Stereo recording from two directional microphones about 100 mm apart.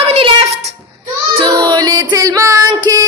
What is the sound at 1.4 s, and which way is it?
Music, 45° right (ahead or behind).